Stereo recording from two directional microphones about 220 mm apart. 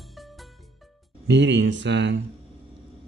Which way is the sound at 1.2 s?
55° right (ahead or behind).